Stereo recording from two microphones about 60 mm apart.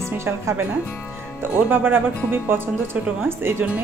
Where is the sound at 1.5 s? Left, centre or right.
Right.